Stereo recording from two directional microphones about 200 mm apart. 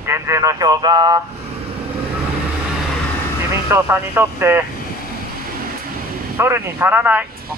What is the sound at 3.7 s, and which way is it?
Speech, 10° right (ahead or behind).